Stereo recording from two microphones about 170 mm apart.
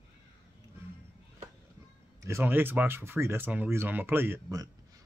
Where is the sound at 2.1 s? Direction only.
15° right (ahead or behind).